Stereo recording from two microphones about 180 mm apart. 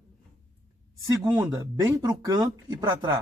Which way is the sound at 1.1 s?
20° right (ahead or behind).